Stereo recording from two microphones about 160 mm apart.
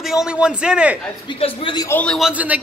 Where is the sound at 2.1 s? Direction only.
5° right (ahead or behind).